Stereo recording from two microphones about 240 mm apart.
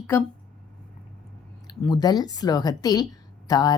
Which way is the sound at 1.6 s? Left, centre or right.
Centre.